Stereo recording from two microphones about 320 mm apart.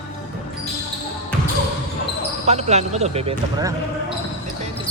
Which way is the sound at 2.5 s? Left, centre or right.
Right.